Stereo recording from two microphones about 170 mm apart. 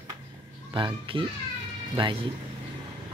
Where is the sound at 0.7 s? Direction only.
30° right (ahead or behind).